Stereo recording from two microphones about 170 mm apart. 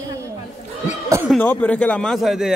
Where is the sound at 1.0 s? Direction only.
15° right (ahead or behind).